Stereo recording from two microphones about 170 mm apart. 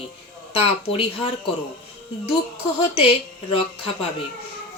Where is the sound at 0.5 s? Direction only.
35° left (ahead or behind).